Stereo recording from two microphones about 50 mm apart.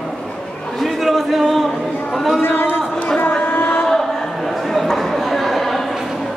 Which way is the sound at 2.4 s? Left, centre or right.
Left.